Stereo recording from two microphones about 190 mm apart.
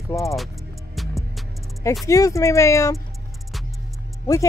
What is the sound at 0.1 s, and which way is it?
Speech, 15° left (ahead or behind).